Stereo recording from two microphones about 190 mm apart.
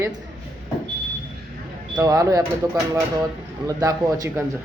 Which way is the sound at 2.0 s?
20° right (ahead or behind).